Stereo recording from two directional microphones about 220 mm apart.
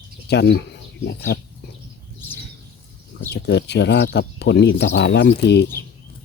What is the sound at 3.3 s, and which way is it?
Speech, 50° left (ahead or behind).